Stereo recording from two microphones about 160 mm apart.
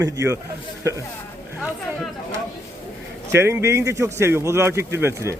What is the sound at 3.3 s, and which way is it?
Speech, 15° right (ahead or behind).